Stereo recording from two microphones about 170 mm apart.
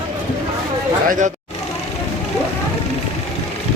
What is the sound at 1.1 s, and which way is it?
Speech, 50° right (ahead or behind).